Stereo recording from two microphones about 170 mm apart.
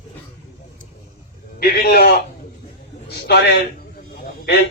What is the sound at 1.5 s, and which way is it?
A man's voice, 65° left (ahead or behind).